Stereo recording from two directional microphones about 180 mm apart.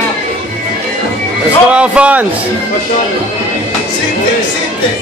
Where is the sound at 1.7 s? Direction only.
5° right (ahead or behind).